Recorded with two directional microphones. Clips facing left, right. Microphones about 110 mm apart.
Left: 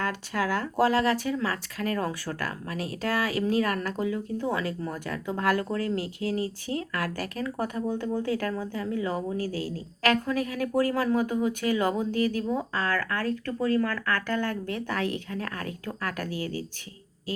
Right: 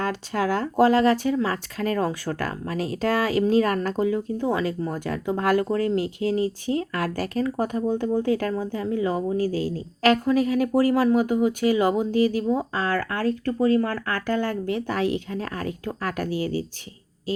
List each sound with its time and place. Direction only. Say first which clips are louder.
0.0 s speech: right 4 dB; 25° right (ahead or behind)